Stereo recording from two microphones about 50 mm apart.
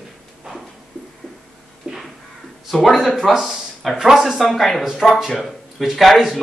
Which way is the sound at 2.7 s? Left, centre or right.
Centre.